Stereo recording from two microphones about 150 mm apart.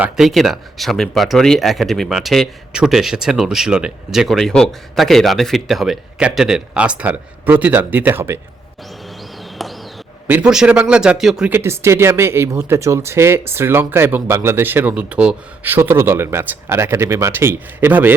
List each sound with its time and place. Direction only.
0.0 s speech: centre (ahead or behind)
9.6 s a sound: centre (ahead or behind)
10.2 s speech: 10° right (ahead or behind)
11.5 s speech: 15° right (ahead or behind)